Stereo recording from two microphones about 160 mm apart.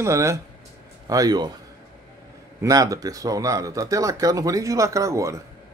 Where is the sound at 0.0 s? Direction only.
20° right (ahead or behind).